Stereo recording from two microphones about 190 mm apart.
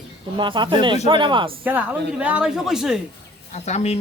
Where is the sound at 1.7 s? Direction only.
10° right (ahead or behind).